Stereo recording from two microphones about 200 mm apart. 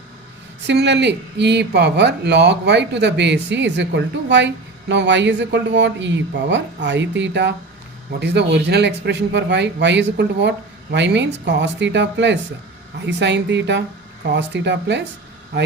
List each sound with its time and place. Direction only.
0.7 s speech: 60° right (ahead or behind)